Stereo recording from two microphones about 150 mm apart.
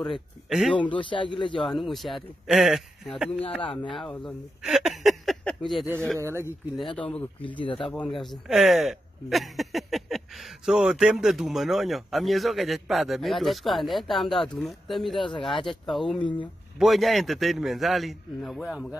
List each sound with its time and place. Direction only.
0.0 s speech: centre (ahead or behind)
0.7 s speech: 35° left (ahead or behind)
1.5 s speech: centre (ahead or behind)
6.1 s speech: 15° right (ahead or behind)
7.0 s speech: 10° left (ahead or behind)
7.4 s speech: 35° left (ahead or behind)
7.9 s speech: 5° left (ahead or behind)
15.1 s speech: 35° left (ahead or behind)
15.4 s speech: centre (ahead or behind)
16.2 s speech: 35° left (ahead or behind)
16.7 s speech: centre (ahead or behind)